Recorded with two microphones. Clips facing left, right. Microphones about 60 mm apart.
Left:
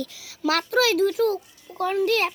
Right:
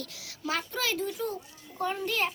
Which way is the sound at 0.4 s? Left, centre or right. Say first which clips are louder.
Left 10 dB; left.